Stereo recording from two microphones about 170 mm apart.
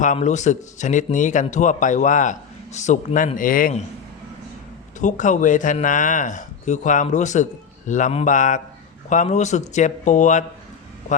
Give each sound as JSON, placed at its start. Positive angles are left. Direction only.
{"t": 0.0, "sound": "a man's voice", "side_deg": 45}
{"t": 4.9, "sound": "a man's voice", "side_deg": 45}